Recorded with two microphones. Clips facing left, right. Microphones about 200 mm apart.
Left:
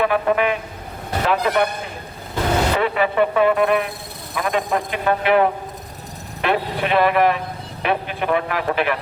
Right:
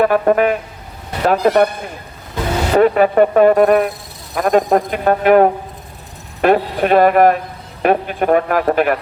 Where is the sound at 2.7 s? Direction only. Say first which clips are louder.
Right 8 dB; 45° right (ahead or behind).